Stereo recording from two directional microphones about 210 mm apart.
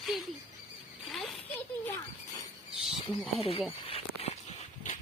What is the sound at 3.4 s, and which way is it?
Speech, 30° left (ahead or behind).